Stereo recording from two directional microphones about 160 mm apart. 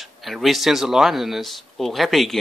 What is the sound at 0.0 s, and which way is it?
Speech, centre (ahead or behind).